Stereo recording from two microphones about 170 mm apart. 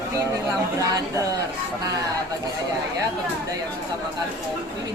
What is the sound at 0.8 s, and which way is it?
Speech, 20° right (ahead or behind).